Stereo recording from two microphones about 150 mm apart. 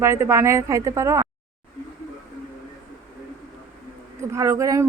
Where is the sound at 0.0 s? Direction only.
15° right (ahead or behind).